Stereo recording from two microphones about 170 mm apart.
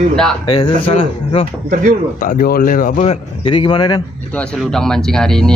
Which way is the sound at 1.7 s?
50° right (ahead or behind).